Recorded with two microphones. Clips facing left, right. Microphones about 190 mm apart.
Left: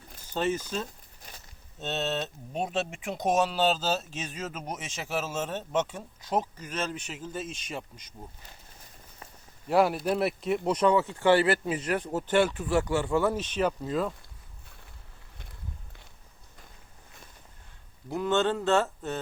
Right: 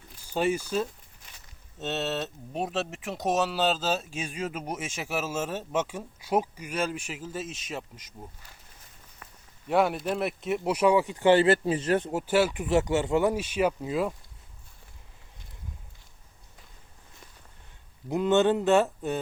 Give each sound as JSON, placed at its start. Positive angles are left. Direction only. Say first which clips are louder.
{"t": 0.3, "sound": "speech", "louder": "right 3 dB", "side_deg": -10}
{"t": 1.2, "sound": "a sound", "louder": "left 6 dB", "side_deg": 35}
{"t": 1.8, "sound": "speech", "louder": "right 1 dB", "side_deg": -5}
{"t": 9.6, "sound": "speech", "louder": "left 1 dB", "side_deg": 0}
{"t": 12.1, "sound": "speech", "louder": "even", "side_deg": -5}
{"t": 18.1, "sound": "speech", "louder": "right 4 dB", "side_deg": -15}